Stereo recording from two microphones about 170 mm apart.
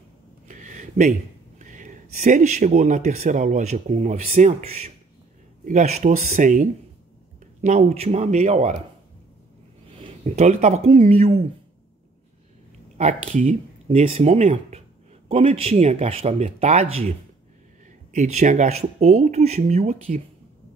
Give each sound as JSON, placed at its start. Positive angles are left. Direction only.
{"t": 0.5, "sound": "a sound", "side_deg": -45}
{"t": 1.6, "sound": "speech", "side_deg": -50}
{"t": 10.2, "sound": "speech", "side_deg": -40}
{"t": 12.9, "sound": "speech", "side_deg": -45}